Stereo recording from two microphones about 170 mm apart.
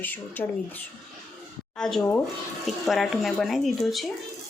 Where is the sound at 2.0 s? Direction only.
15° left (ahead or behind).